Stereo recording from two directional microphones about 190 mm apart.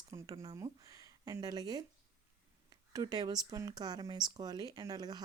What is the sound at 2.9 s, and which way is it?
Speech, 20° right (ahead or behind).